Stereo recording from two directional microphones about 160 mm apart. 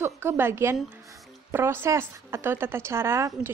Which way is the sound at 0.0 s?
15° right (ahead or behind).